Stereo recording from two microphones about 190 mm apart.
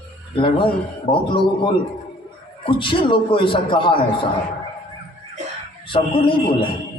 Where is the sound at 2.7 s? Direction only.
25° left (ahead or behind).